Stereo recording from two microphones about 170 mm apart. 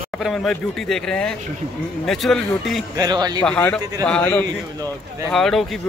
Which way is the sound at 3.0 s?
25° right (ahead or behind).